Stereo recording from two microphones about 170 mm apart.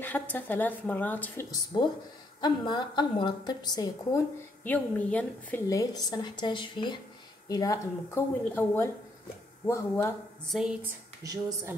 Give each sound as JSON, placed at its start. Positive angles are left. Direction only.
{"t": 0.0, "sound": "a woman's voice", "side_deg": 10}
{"t": 4.6, "sound": "a woman's voice", "side_deg": 10}
{"t": 10.5, "sound": "speech", "side_deg": -5}
{"t": 11.2, "sound": "speech", "side_deg": -20}